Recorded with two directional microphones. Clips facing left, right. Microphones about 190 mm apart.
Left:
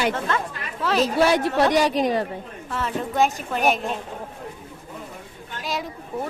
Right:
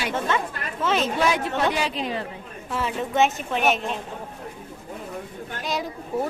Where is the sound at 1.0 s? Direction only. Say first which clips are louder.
Left 4 dB; 35° left (ahead or behind).